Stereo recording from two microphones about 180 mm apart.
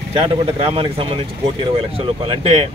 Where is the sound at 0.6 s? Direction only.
30° right (ahead or behind).